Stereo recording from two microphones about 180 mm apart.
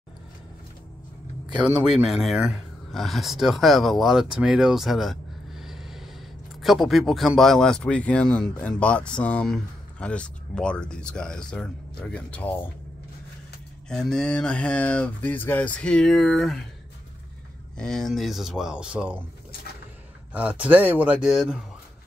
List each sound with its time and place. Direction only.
1.6 s speech: 5° right (ahead or behind)
13.8 s speech: 5° left (ahead or behind)
17.7 s speech: 5° left (ahead or behind)
20.3 s speech: 5° right (ahead or behind)